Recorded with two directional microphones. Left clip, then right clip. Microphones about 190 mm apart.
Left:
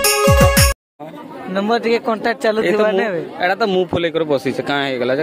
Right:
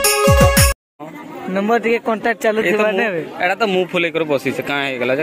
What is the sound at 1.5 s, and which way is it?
Speech, 15° right (ahead or behind).